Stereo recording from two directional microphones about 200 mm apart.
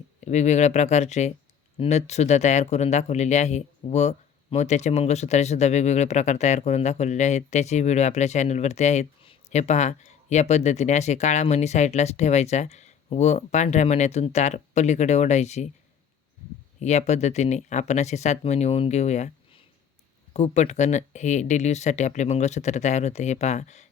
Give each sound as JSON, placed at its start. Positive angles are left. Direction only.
{"t": 0.3, "sound": "speech", "side_deg": 35}
{"t": 16.8, "sound": "speech", "side_deg": 35}
{"t": 20.3, "sound": "speech", "side_deg": 35}